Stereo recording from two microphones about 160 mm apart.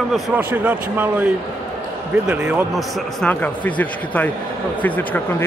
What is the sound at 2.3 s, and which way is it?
A man's voice, 5° right (ahead or behind).